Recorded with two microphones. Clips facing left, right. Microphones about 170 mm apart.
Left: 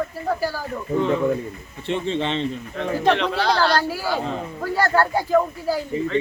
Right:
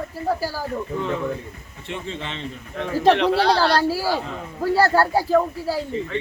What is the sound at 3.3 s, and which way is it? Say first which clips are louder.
A man's voice: right 1 dB; 30° right (ahead or behind).